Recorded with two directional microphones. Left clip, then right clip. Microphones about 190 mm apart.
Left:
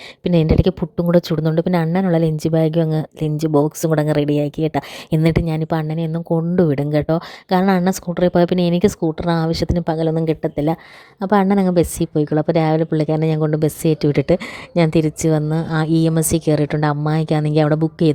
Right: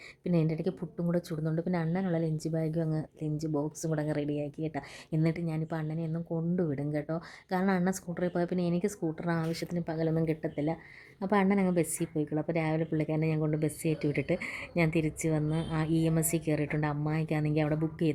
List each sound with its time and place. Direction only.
0.3 s speech: 40° left (ahead or behind)